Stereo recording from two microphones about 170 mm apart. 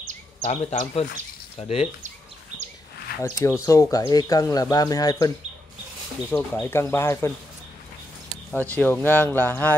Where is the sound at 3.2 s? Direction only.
15° left (ahead or behind).